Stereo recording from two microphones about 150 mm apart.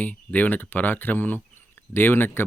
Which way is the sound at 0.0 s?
10° left (ahead or behind).